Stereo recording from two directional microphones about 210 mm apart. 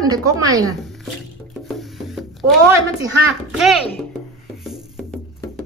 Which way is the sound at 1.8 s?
Centre (ahead or behind).